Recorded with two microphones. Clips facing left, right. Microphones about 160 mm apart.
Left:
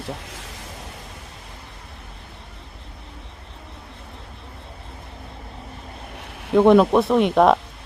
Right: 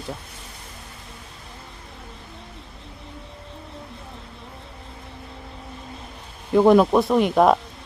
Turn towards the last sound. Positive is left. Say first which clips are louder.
# left 1 dB
turn(degrees=0)  # may be behind; listen again after turning